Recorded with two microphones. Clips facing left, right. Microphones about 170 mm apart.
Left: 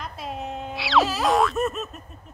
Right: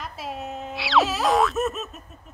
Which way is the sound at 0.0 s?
Centre (ahead or behind).